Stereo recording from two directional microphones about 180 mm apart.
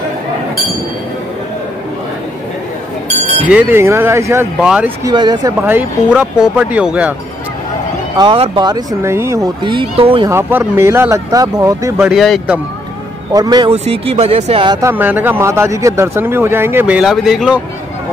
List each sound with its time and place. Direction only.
3.4 s speech: 10° right (ahead or behind)
4.6 s speech: 5° right (ahead or behind)
5.0 s speech: 25° right (ahead or behind)
5.7 s speech: 10° right (ahead or behind)
8.2 s speech: 25° right (ahead or behind)
10.3 s speech: 15° right (ahead or behind)
12.1 s speech: centre (ahead or behind)
13.3 s speech: 20° right (ahead or behind)
13.7 s speech: 35° right (ahead or behind)
14.9 s speech: 10° right (ahead or behind)